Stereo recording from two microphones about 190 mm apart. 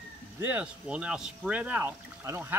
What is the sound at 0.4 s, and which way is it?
Speech, 10° right (ahead or behind).